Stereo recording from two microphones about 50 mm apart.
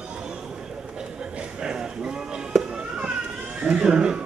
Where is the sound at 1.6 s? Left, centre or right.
Centre.